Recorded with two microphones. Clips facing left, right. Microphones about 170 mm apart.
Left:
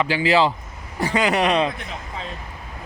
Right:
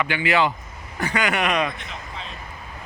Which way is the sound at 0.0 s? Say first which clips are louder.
Left 3 dB; 30° left (ahead or behind).